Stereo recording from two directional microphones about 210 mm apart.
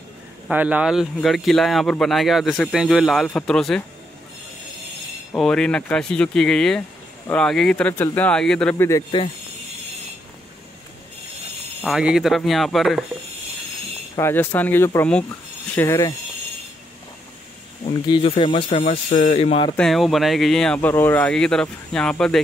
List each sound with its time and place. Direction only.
0.5 s speech: 5° right (ahead or behind)
5.3 s speech: 5° left (ahead or behind)
11.8 s speech: centre (ahead or behind)
14.1 s speech: 10° left (ahead or behind)
17.8 s speech: 25° left (ahead or behind)
19.8 s speech: centre (ahead or behind)